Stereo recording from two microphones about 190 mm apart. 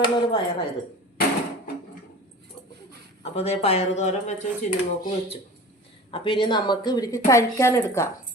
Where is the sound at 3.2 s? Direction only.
35° left (ahead or behind).